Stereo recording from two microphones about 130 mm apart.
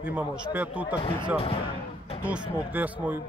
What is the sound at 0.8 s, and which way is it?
Speech, 35° left (ahead or behind).